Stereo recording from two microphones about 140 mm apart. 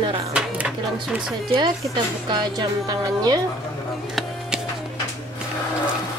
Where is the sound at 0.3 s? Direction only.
10° right (ahead or behind).